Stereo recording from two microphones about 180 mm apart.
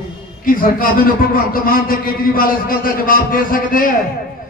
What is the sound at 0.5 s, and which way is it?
A man's voice, 50° left (ahead or behind).